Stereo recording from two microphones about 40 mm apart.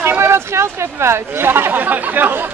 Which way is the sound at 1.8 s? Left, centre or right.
Right.